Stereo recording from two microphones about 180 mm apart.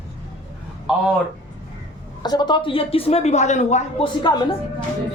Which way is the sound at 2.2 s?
25° left (ahead or behind).